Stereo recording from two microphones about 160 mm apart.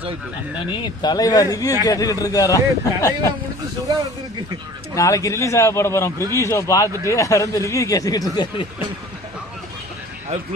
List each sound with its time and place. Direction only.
0.8 s speech: 25° left (ahead or behind)
4.9 s a man's voice: 20° left (ahead or behind)